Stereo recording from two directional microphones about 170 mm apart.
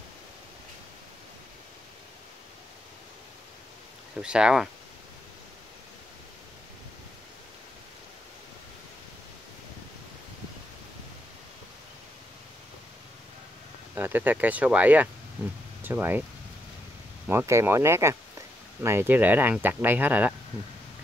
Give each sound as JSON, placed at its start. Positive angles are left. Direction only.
{"t": 4.2, "sound": "speech", "side_deg": -5}
{"t": 13.9, "sound": "speech", "side_deg": -10}
{"t": 17.3, "sound": "speech", "side_deg": -15}